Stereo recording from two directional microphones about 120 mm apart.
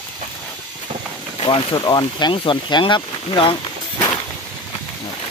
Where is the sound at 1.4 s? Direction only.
45° left (ahead or behind).